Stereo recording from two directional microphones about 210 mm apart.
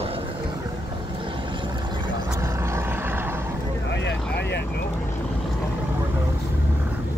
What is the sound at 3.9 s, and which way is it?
Vehicle, 55° left (ahead or behind).